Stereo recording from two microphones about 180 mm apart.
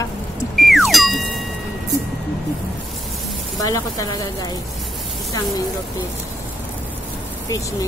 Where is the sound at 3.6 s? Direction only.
20° left (ahead or behind).